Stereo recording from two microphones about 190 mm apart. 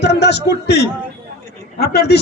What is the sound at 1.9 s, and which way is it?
Speech, 60° left (ahead or behind).